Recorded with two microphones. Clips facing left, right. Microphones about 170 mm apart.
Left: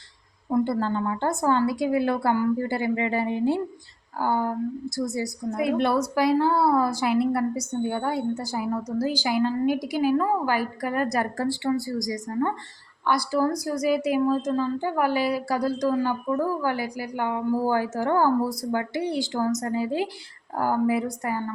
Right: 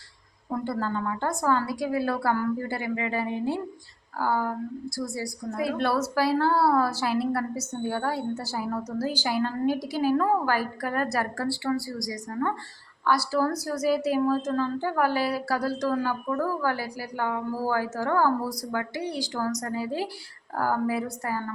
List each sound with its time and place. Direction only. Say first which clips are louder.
0.6 s a woman's voice: left 2 dB; 25° left (ahead or behind)